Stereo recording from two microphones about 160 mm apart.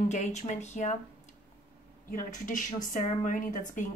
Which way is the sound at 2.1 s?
55° left (ahead or behind).